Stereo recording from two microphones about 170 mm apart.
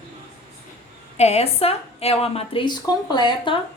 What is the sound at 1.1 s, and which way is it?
A woman's voice, 40° left (ahead or behind).